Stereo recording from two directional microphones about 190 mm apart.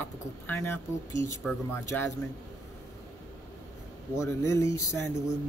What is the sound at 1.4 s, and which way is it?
Speech, 5° left (ahead or behind).